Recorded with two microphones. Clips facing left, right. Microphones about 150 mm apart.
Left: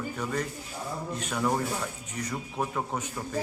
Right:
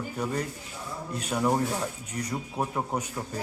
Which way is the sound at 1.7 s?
10° right (ahead or behind).